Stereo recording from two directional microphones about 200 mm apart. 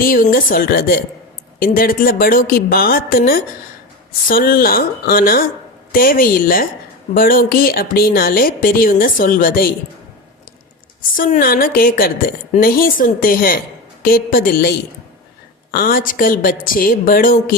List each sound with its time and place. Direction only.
0.0 s speech: 45° left (ahead or behind)
11.2 s speech: 45° left (ahead or behind)